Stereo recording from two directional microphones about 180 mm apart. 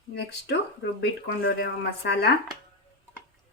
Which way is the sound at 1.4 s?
65° left (ahead or behind).